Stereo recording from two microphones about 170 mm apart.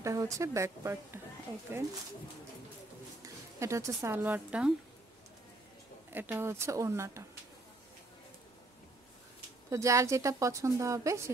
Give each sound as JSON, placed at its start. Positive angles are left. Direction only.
{"t": 0.0, "sound": "a woman's voice", "side_deg": -20}
{"t": 3.2, "sound": "speech", "side_deg": -15}
{"t": 6.1, "sound": "a woman's voice", "side_deg": -10}
{"t": 9.7, "sound": "a woman's voice", "side_deg": -20}